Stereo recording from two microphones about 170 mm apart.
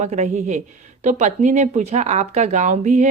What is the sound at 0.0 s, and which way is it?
A woman's voice, 45° right (ahead or behind).